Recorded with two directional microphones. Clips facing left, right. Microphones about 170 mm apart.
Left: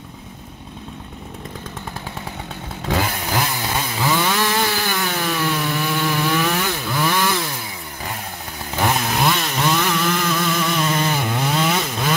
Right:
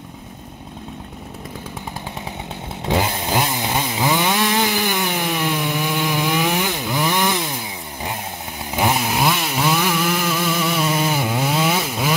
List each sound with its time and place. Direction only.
2.9 s chainsaw: 20° right (ahead or behind)
8.7 s chainsaw: 10° right (ahead or behind)